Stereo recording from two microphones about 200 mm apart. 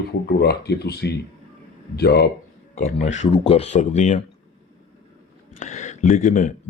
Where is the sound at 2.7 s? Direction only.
35° left (ahead or behind).